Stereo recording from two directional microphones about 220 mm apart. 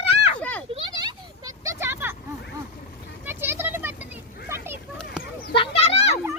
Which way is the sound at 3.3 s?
10° right (ahead or behind).